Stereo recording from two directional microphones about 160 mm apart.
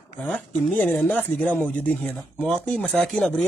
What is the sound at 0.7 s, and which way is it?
Speech, 10° left (ahead or behind).